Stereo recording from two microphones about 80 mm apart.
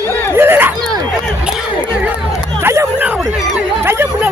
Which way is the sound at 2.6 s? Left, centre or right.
Right.